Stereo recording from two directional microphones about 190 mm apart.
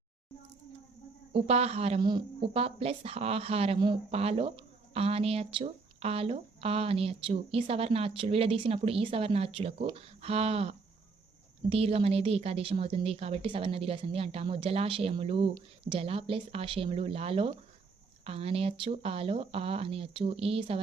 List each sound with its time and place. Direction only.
1.3 s a woman's voice: 35° right (ahead or behind)